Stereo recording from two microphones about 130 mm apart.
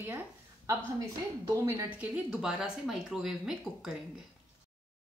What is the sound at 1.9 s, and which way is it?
A woman's voice, 10° right (ahead or behind).